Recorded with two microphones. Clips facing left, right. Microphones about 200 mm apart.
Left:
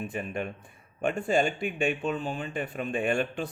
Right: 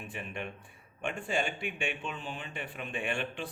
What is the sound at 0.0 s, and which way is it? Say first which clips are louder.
A man's voice: left 7 dB; 40° left (ahead or behind).